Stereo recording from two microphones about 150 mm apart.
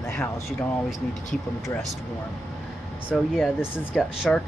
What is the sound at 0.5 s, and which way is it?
Speech, centre (ahead or behind).